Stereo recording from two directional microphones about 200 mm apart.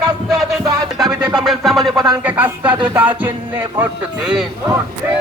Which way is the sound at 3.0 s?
10° right (ahead or behind).